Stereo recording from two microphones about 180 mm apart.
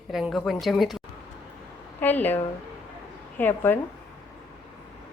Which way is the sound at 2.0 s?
10° left (ahead or behind).